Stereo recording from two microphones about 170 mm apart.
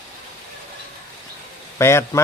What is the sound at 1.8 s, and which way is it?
Speech, 15° left (ahead or behind).